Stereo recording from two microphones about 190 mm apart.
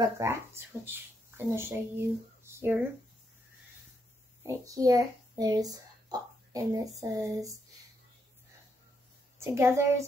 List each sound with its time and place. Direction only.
0.2 s speech: 15° right (ahead or behind)
4.4 s a child's voice: 15° right (ahead or behind)
9.4 s a woman's voice: 15° right (ahead or behind)